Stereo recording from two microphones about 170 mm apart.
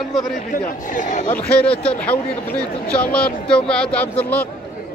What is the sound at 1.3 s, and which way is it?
Speech, 5° left (ahead or behind).